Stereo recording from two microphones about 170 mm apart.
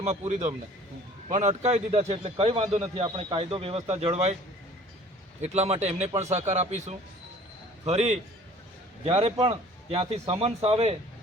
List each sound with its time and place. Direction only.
0.0 s a man's voice: 40° right (ahead or behind)
5.4 s a man's voice: 40° right (ahead or behind)